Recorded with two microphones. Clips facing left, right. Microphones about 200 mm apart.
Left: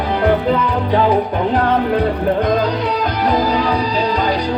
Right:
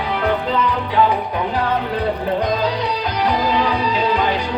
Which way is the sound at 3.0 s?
40° left (ahead or behind).